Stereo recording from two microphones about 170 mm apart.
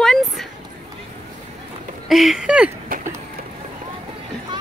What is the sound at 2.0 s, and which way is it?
Speech, centre (ahead or behind).